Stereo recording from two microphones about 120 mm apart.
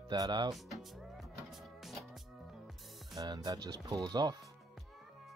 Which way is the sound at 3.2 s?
30° right (ahead or behind).